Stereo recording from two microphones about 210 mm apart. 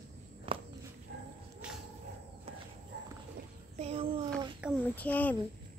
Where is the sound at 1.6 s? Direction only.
5° right (ahead or behind).